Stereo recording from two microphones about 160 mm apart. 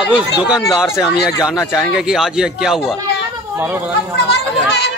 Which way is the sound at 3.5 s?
15° right (ahead or behind).